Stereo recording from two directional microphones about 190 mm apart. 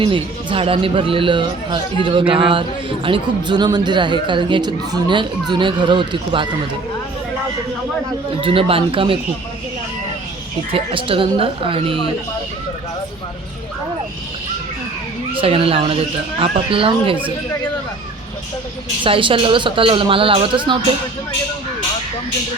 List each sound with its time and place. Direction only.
0.0 s a man's voice: 30° right (ahead or behind)
8.4 s a man's voice: 30° right (ahead or behind)
10.7 s a man's voice: 30° right (ahead or behind)
15.4 s a man's voice: 30° right (ahead or behind)
19.0 s a man's voice: 30° right (ahead or behind)